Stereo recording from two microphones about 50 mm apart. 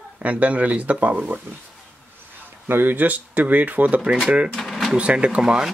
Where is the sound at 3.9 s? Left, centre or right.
Right.